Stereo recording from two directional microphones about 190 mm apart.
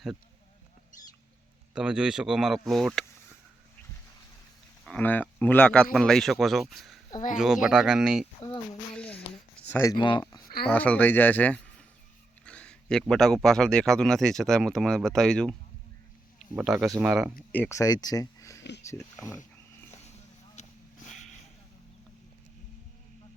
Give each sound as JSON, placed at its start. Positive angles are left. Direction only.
{"t": 1.7, "sound": "speech", "side_deg": -5}
{"t": 4.9, "sound": "speech", "side_deg": 10}
{"t": 9.0, "sound": "a sound", "side_deg": 5}
{"t": 9.6, "sound": "speech", "side_deg": 15}
{"t": 10.4, "sound": "a sound", "side_deg": 55}
{"t": 10.7, "sound": "speech", "side_deg": 10}
{"t": 16.6, "sound": "speech", "side_deg": -5}
{"t": 17.5, "sound": "speech", "side_deg": 10}
{"t": 20.6, "sound": "a sound", "side_deg": 40}